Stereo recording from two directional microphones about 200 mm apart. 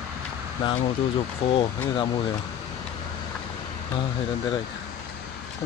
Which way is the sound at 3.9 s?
25° left (ahead or behind).